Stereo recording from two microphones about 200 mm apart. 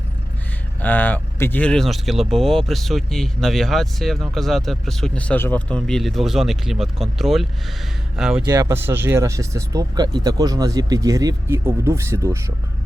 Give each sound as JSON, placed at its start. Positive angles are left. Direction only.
{"t": 0.8, "sound": "speech", "side_deg": 10}
{"t": 8.4, "sound": "speech", "side_deg": -15}